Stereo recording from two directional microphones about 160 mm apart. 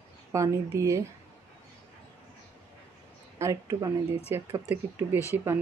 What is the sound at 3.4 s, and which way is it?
Speech, 20° right (ahead or behind).